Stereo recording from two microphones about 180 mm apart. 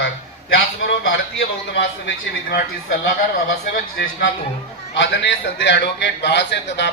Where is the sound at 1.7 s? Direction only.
75° left (ahead or behind).